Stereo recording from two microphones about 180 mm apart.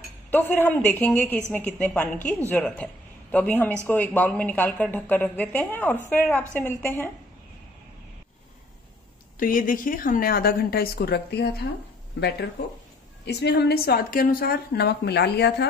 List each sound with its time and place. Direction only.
0.3 s a woman's voice: 10° left (ahead or behind)
9.4 s a woman's voice: 50° left (ahead or behind); by 15.6 s 65° left (ahead or behind)